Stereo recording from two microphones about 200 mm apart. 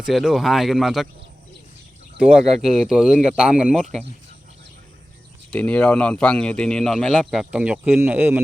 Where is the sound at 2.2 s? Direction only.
Centre (ahead or behind).